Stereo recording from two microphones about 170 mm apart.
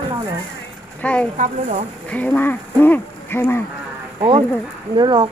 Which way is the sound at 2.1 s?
10° left (ahead or behind).